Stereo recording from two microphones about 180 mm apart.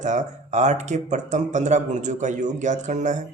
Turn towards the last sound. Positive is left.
turn(degrees=-40)  # may be behind; listen again after turning